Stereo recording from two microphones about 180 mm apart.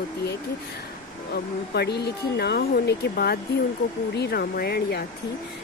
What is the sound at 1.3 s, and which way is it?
Speech, 65° left (ahead or behind).